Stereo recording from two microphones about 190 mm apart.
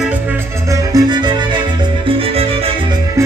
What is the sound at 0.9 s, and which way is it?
Music, 25° right (ahead or behind).